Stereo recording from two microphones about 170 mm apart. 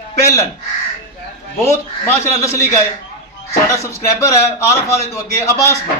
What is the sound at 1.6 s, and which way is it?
Speech, 15° left (ahead or behind).